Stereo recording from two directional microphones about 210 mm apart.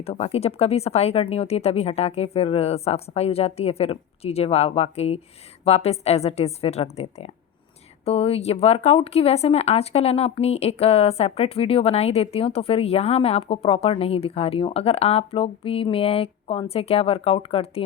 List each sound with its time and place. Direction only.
0.0 s speech: 30° left (ahead or behind)